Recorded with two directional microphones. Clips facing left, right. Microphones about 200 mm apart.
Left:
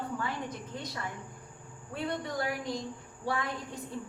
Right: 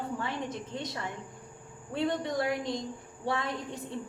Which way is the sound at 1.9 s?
25° right (ahead or behind).